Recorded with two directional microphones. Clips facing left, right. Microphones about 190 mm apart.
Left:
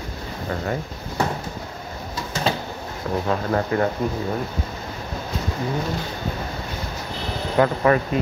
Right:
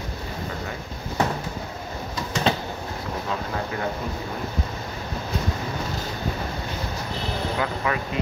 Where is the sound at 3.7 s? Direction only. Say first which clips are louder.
Left 10 dB; 50° left (ahead or behind).